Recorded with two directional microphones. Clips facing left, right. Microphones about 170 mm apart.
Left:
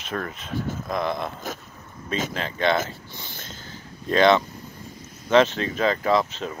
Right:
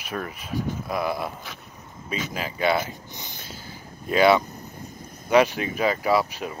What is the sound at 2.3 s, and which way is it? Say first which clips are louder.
Speech: even; 10° right (ahead or behind).